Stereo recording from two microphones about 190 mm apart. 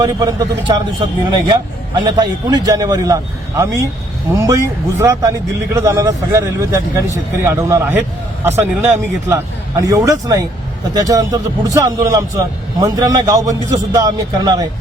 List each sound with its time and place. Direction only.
0.0 s a man's voice: 20° right (ahead or behind)